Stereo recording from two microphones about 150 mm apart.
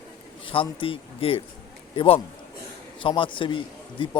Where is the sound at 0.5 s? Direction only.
35° left (ahead or behind).